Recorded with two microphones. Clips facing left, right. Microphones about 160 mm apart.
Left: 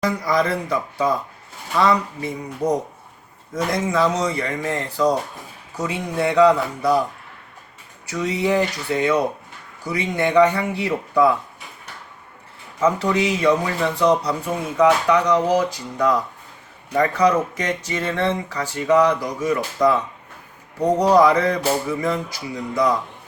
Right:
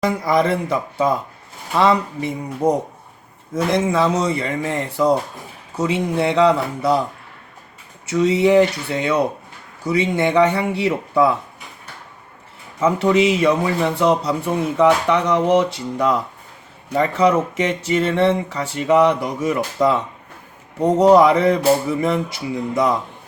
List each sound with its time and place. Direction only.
0.0 s a man's voice: 25° right (ahead or behind)
8.0 s a man's voice: 25° right (ahead or behind)
12.8 s a man's voice: 25° right (ahead or behind)